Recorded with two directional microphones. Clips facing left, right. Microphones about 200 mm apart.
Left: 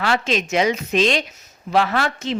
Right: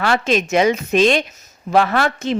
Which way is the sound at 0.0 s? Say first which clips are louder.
Right 3 dB; 50° right (ahead or behind).